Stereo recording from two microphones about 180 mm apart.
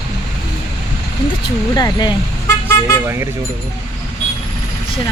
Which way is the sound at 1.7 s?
20° left (ahead or behind).